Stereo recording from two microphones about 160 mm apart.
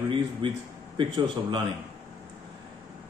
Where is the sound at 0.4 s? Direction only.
30° right (ahead or behind).